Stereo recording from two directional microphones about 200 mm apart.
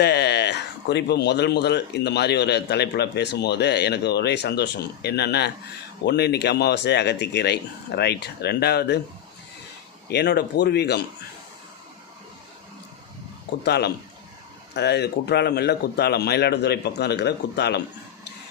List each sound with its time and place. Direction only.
0.0 s speech: 55° left (ahead or behind)
10.1 s speech: 55° left (ahead or behind)
13.7 s speech: 55° left (ahead or behind)